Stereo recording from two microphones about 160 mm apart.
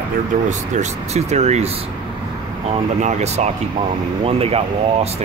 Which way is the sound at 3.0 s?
45° right (ahead or behind).